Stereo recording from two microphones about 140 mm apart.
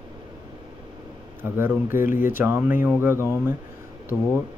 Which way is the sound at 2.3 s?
15° right (ahead or behind).